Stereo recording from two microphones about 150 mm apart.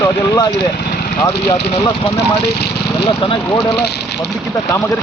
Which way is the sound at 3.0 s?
40° left (ahead or behind).